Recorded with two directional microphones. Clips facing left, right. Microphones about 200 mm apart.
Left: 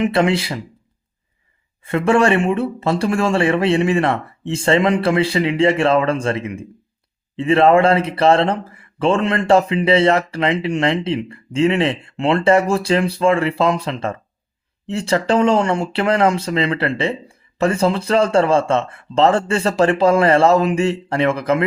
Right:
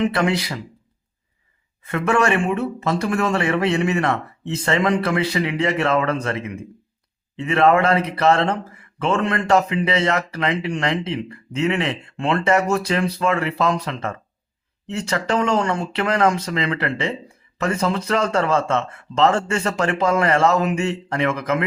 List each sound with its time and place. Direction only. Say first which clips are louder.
0.0 s speech: left 3 dB; 25° left (ahead or behind)
1.8 s speech: left 4 dB; 30° left (ahead or behind)